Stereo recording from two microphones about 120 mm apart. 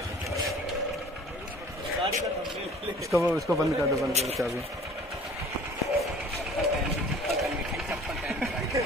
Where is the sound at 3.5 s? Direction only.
25° right (ahead or behind).